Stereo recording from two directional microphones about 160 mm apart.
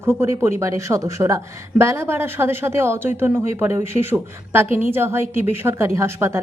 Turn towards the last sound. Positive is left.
turn(degrees=-15)  # may be behind; listen again after turning